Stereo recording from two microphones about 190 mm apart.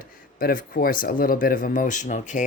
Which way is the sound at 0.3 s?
50° left (ahead or behind).